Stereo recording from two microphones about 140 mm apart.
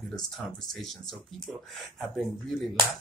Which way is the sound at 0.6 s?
Centre (ahead or behind).